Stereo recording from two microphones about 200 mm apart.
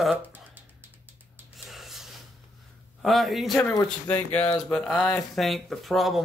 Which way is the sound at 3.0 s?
Centre (ahead or behind).